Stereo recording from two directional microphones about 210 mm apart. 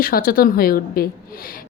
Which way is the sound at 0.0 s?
45° left (ahead or behind).